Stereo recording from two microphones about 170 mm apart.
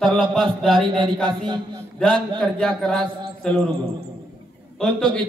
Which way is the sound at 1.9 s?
5° left (ahead or behind).